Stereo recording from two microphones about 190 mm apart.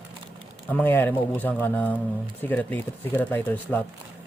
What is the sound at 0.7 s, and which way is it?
Speech, 10° left (ahead or behind).